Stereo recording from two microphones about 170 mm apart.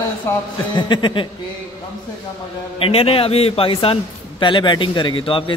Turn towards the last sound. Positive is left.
turn(degrees=30)  # may be behind; listen again after turning